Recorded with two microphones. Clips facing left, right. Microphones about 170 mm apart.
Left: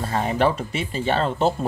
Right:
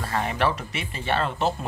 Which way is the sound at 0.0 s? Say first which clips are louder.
Left 4 dB; 30° left (ahead or behind).